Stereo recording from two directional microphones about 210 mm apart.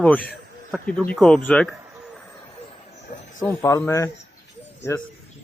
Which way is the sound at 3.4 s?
15° left (ahead or behind).